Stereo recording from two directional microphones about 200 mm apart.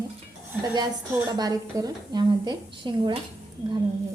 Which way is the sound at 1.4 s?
20° right (ahead or behind).